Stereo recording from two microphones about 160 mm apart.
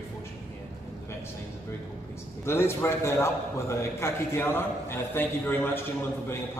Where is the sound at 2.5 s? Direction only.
15° left (ahead or behind).